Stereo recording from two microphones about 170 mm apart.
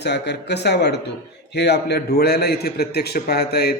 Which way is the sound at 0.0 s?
80° left.